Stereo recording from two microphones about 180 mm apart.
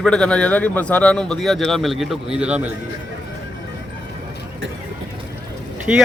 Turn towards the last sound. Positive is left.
turn(degrees=-5)  # may be behind; listen again after turning